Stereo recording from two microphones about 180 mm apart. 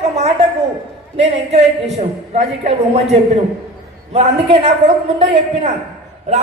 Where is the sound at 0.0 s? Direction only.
40° right (ahead or behind).